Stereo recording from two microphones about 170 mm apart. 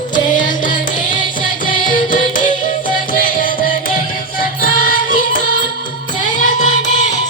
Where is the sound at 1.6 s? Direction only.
55° left (ahead or behind).